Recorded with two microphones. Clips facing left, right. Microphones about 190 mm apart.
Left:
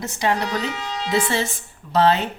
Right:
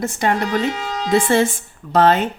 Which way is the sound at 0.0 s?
50° right (ahead or behind).